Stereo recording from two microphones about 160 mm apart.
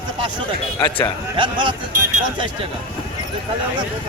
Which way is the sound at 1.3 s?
30° right (ahead or behind).